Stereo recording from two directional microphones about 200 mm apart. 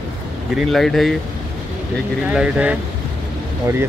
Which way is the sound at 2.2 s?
5° right (ahead or behind).